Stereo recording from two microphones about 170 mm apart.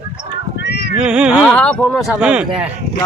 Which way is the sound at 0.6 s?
75° left (ahead or behind).